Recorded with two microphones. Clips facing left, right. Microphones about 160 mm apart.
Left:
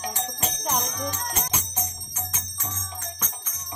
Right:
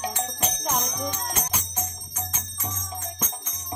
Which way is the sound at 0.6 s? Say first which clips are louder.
Left 1 dB; centre (ahead or behind).